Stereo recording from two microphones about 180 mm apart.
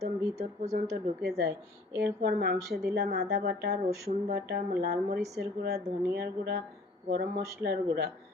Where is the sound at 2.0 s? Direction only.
60° right (ahead or behind).